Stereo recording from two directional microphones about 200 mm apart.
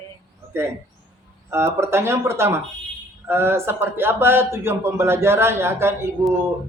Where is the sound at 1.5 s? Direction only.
15° right (ahead or behind).